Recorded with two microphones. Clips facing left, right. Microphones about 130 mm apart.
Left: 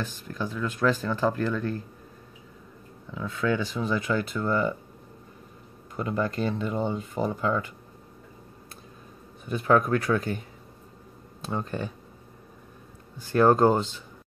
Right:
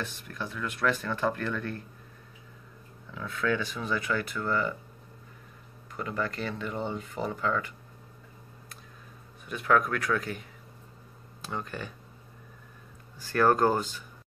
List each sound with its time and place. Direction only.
0.3 s speech: 30° left (ahead or behind)
3.1 s speech: 20° left (ahead or behind)
5.9 s speech: 25° left (ahead or behind)
9.5 s speech: 30° left (ahead or behind)
11.4 s speech: 30° left (ahead or behind)
13.2 s speech: 20° left (ahead or behind)